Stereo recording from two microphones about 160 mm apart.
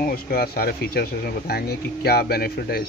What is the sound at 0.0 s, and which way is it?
Speech, 70° left (ahead or behind).